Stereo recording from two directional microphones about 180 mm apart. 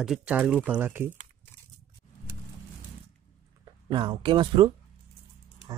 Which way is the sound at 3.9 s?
25° right (ahead or behind).